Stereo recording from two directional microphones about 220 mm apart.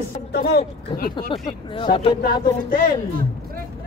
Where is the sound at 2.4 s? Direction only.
40° left (ahead or behind).